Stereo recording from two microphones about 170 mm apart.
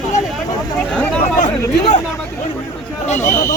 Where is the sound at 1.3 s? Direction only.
45° left (ahead or behind).